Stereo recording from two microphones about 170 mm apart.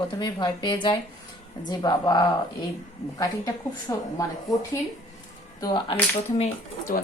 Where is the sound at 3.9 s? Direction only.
20° left (ahead or behind).